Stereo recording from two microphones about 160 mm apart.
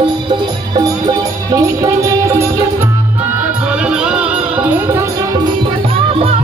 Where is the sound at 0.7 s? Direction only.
25° right (ahead or behind).